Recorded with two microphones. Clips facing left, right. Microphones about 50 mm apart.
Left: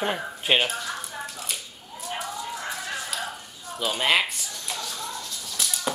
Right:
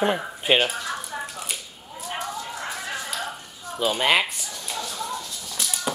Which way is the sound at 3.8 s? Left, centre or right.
Centre.